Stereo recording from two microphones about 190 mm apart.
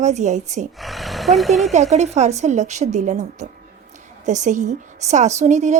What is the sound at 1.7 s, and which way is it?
A woman's voice, 35° right (ahead or behind).